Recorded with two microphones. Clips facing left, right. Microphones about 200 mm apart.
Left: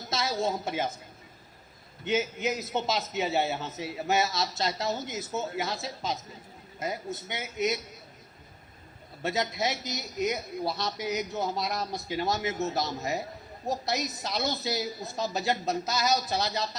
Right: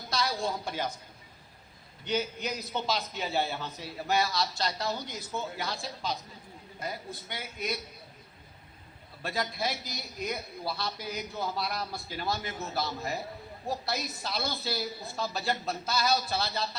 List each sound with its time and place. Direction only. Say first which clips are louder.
0.1 s a woman's voice: left 2 dB; 20° left (ahead or behind)
2.0 s a man's voice: left 4 dB; 20° left (ahead or behind)
9.2 s a man's voice: left 3 dB; 20° left (ahead or behind)